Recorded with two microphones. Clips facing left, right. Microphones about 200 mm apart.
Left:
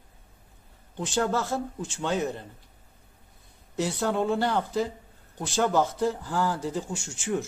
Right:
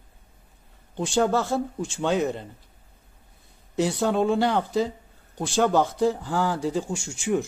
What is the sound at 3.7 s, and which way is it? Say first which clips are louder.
Speech: right 4 dB; 15° right (ahead or behind).